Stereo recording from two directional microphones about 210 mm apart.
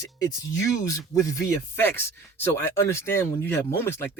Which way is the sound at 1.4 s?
10° left (ahead or behind).